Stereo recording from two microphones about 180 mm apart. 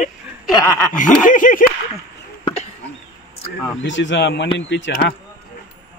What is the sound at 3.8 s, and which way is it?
Speech, 90° left.